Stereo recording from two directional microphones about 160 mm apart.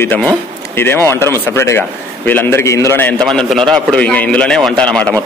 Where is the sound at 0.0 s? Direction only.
10° left (ahead or behind).